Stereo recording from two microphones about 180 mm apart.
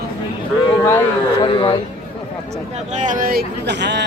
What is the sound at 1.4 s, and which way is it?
Speech, 25° left (ahead or behind).